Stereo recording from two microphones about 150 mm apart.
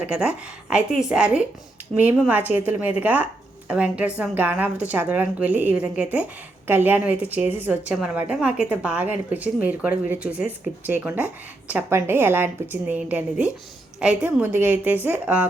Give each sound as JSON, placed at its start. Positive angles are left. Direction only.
{"t": 0.0, "sound": "a woman's voice", "side_deg": -10}